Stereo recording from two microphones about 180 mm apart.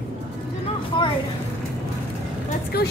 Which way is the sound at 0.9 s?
25° left (ahead or behind).